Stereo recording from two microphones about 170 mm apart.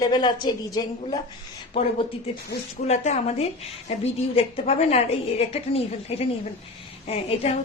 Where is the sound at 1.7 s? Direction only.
35° left (ahead or behind).